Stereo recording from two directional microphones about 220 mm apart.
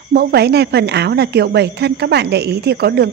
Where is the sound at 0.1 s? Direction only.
45° right (ahead or behind).